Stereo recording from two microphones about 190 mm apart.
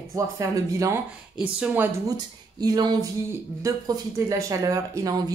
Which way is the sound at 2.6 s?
20° right (ahead or behind).